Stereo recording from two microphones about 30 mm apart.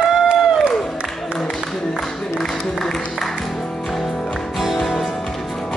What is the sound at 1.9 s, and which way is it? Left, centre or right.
Music, centre.